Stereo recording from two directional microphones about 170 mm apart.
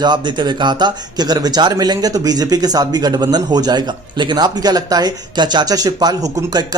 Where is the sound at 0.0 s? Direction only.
25° right (ahead or behind).